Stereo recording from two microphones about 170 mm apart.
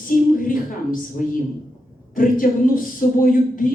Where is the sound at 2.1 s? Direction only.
55° left (ahead or behind).